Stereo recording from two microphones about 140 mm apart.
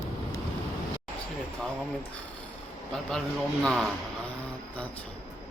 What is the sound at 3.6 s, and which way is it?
Speech, centre (ahead or behind).